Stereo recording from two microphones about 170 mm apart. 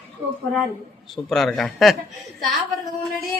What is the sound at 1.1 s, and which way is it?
Speech, centre (ahead or behind).